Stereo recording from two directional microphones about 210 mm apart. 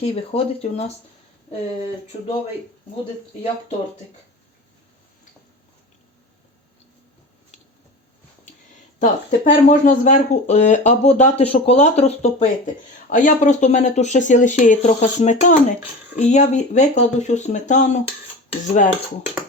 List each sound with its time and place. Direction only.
0.0 s speech: 30° left (ahead or behind)
9.0 s speech: 35° left (ahead or behind)